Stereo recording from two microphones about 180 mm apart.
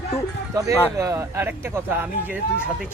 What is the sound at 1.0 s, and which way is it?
Speech, 15° right (ahead or behind).